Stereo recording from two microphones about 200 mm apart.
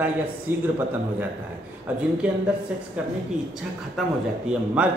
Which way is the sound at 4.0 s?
Centre (ahead or behind).